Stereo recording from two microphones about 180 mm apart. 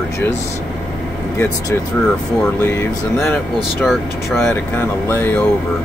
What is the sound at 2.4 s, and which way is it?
Speech, 15° left (ahead or behind).